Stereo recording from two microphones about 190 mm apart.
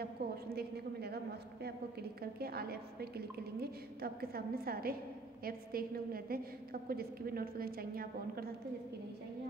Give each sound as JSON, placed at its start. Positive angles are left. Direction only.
{"t": 0.2, "sound": "a woman's voice", "side_deg": -55}